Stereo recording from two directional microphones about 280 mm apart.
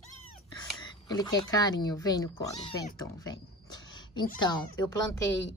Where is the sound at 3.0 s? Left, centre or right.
Centre.